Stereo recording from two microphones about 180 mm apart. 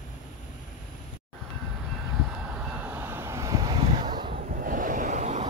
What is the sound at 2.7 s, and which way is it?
Vehicle, 10° right (ahead or behind).